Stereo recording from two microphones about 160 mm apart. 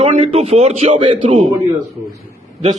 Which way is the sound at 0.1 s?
45° right (ahead or behind).